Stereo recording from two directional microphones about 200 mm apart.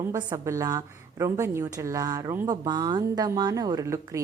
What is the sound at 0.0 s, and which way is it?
A woman's voice, 15° right (ahead or behind).